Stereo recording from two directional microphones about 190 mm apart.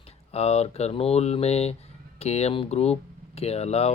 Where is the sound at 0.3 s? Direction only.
35° left (ahead or behind).